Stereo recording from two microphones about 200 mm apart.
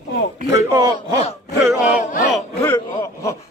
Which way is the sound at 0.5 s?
15° right (ahead or behind).